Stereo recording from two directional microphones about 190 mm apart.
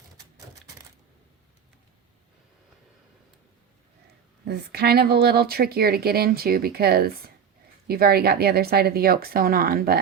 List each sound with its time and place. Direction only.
4.4 s speech: 60° right (ahead or behind)